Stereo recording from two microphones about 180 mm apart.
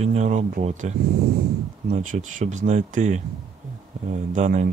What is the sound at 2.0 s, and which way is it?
Speech, 40° right (ahead or behind).